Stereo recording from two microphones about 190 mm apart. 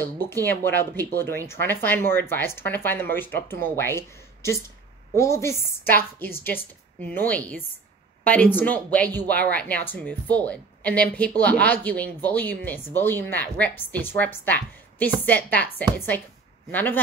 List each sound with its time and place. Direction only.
0.0 s speech: 10° left (ahead or behind)